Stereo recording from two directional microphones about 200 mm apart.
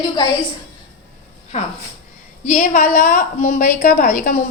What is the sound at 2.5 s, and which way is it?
A woman's voice, 40° left (ahead or behind).